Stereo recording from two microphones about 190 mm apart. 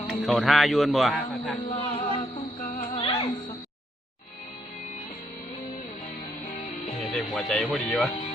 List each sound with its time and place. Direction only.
0.1 s a man's voice: centre (ahead or behind)
1.5 s music: 35° left (ahead or behind)
7.2 s a man's voice: centre (ahead or behind)